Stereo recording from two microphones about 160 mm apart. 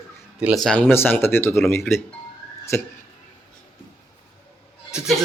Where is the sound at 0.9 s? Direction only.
15° left (ahead or behind).